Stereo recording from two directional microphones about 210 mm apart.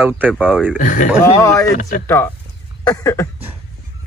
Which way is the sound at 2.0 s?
10° left (ahead or behind).